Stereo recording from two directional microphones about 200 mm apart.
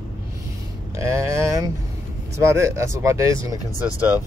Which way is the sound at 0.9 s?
15° right (ahead or behind).